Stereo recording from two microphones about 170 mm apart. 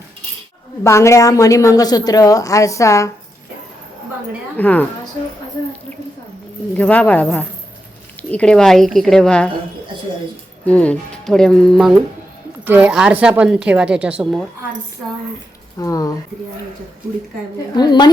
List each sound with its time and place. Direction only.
0.9 s a woman's voice: 15° left (ahead or behind)
4.5 s speech: 10° left (ahead or behind)
6.7 s speech: 10° left (ahead or behind)
10.7 s speech: 5° left (ahead or behind)
15.8 s a woman's voice: 20° left (ahead or behind)
17.7 s a woman's voice: 25° left (ahead or behind)